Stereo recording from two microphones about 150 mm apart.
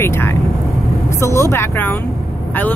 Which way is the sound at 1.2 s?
20° left (ahead or behind).